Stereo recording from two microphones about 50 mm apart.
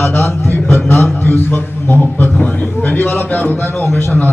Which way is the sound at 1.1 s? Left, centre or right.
Left.